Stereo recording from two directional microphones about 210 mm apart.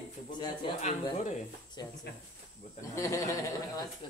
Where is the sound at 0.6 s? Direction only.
35° left (ahead or behind).